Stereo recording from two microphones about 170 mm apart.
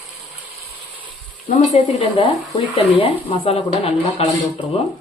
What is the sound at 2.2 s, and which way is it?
Speech, 35° left (ahead or behind).